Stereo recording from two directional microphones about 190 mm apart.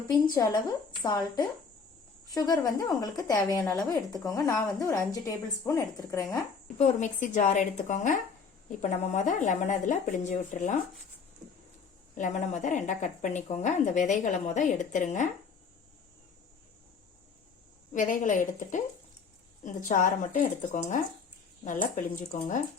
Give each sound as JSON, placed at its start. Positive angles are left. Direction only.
{"t": 0.3, "sound": "speech", "side_deg": 20}
{"t": 6.7, "sound": "a woman's voice", "side_deg": 40}
{"t": 12.1, "sound": "a woman's voice", "side_deg": 40}
{"t": 17.9, "sound": "speech", "side_deg": 40}